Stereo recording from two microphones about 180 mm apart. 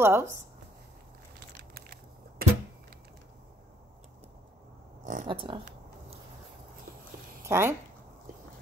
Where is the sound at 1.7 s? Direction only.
55° right (ahead or behind).